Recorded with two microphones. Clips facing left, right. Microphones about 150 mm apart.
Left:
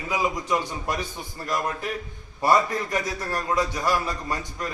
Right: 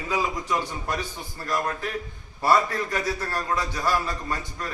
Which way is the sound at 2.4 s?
15° left (ahead or behind).